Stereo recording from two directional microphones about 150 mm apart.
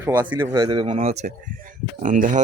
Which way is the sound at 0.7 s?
40° right (ahead or behind).